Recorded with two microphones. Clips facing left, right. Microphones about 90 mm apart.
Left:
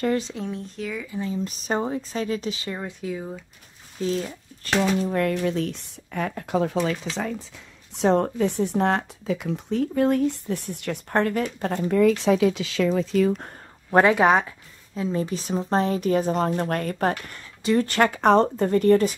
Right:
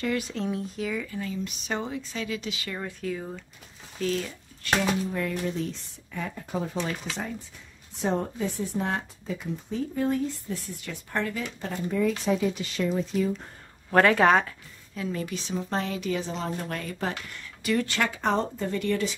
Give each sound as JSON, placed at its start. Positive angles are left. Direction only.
{"t": 0.0, "sound": "speech", "side_deg": 35}
{"t": 0.5, "sound": "speech", "side_deg": -5}
{"t": 1.2, "sound": "speech", "side_deg": 35}
{"t": 2.7, "sound": "speech", "side_deg": 15}
{"t": 4.0, "sound": "speech", "side_deg": 25}
{"t": 5.0, "sound": "speech", "side_deg": 65}
{"t": 13.8, "sound": "speech", "side_deg": 15}
{"t": 15.0, "sound": "speech", "side_deg": 30}
{"t": 18.7, "sound": "speech", "side_deg": 45}